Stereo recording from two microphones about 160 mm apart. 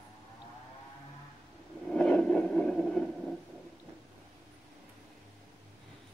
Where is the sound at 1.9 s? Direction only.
5° left (ahead or behind).